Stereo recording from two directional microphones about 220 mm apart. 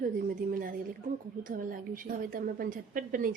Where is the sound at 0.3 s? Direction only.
40° right (ahead or behind).